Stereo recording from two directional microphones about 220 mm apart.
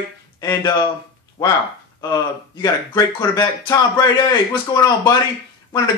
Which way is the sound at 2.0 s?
15° left (ahead or behind).